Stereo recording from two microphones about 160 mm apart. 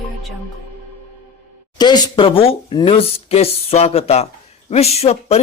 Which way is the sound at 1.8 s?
30° left (ahead or behind).